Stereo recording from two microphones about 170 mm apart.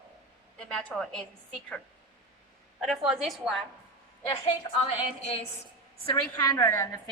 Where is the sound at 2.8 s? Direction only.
Centre (ahead or behind).